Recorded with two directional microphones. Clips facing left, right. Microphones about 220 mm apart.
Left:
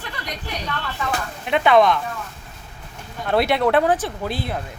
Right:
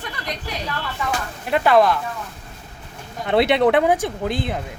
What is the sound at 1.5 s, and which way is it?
Speech, 5° right (ahead or behind).